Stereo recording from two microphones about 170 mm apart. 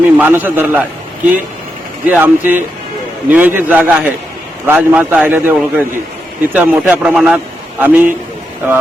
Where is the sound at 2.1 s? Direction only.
10° right (ahead or behind).